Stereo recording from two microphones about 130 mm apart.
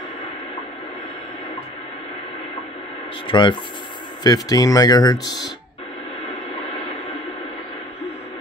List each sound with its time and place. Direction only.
3.3 s speech: 35° left (ahead or behind)